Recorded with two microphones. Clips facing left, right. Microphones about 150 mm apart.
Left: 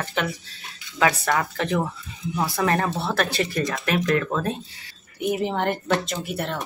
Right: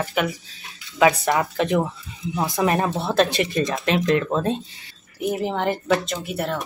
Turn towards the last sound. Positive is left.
turn(degrees=0)  # may be behind; listen again after turning